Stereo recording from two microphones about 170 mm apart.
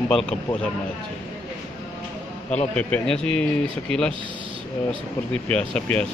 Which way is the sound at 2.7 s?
5° left (ahead or behind).